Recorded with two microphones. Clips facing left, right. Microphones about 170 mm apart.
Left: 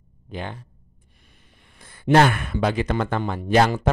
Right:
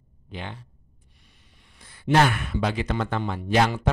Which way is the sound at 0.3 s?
45° left (ahead or behind).